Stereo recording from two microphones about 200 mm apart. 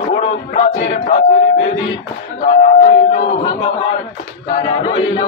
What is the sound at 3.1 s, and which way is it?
Speech, 35° left (ahead or behind).